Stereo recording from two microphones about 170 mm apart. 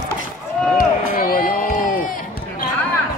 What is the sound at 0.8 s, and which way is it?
Run, 55° left (ahead or behind).